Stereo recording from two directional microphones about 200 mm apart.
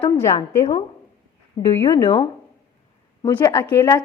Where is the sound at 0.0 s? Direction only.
15° left (ahead or behind).